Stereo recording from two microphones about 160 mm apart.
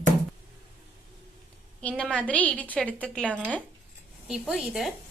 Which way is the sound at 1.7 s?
5° left (ahead or behind).